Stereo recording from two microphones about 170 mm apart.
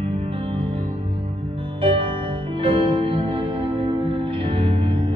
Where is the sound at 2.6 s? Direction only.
30° right (ahead or behind).